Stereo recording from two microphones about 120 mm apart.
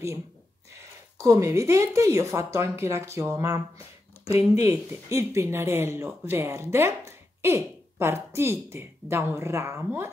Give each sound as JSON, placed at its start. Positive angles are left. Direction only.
{"t": 1.1, "sound": "speech", "side_deg": -30}